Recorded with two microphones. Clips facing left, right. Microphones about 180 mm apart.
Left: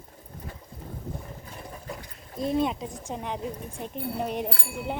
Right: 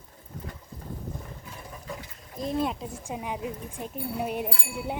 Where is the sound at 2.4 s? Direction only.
Centre (ahead or behind).